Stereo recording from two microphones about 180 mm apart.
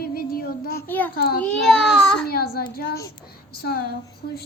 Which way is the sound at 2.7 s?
55° left (ahead or behind).